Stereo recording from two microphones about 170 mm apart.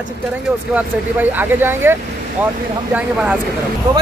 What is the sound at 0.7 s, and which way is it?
Speech, 10° right (ahead or behind).